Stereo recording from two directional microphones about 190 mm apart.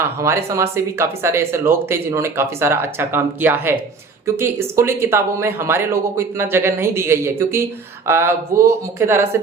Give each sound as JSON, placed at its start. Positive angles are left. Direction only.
{"t": 0.0, "sound": "speech", "side_deg": -15}